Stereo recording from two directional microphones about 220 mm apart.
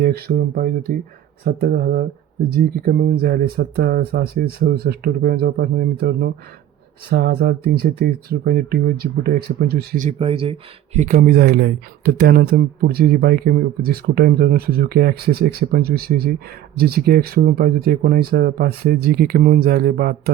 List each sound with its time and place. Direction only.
0.0 s speech: 45° right (ahead or behind)